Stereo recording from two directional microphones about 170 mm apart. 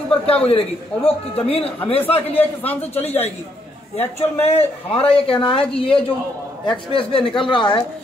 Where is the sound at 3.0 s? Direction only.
40° left (ahead or behind).